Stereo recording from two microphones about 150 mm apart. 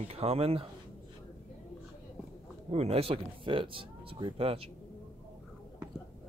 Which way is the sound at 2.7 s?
40° right (ahead or behind).